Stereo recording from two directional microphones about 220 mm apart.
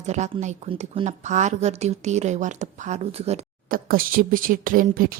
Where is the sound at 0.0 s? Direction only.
30° right (ahead or behind).